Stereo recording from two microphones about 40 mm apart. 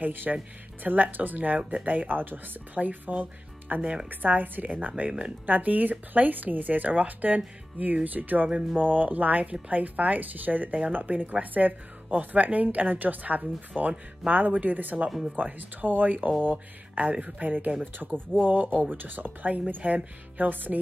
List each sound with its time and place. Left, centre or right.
0.0 s a woman's voice: right
15.0 s speech: centre
15.3 s speech: right
19.8 s a woman's voice: right
20.3 s speech: right